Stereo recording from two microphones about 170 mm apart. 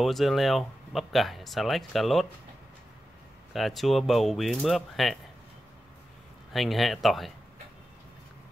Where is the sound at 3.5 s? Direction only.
Centre (ahead or behind).